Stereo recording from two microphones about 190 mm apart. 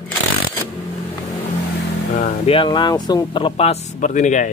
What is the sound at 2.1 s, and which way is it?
Speech, 35° left (ahead or behind).